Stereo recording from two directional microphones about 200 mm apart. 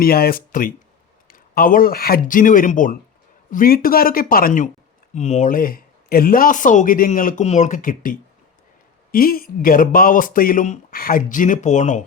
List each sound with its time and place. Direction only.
0.0 s speech: 50° left (ahead or behind)
9.1 s speech: 45° left (ahead or behind)